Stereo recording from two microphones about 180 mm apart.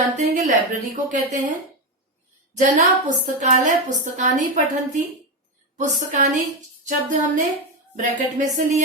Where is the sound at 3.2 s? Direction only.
45° right (ahead or behind).